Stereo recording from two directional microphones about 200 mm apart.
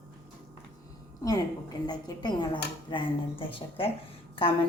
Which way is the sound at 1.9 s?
20° left (ahead or behind).